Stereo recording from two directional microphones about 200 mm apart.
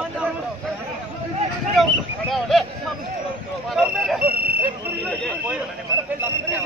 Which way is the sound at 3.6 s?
Centre (ahead or behind).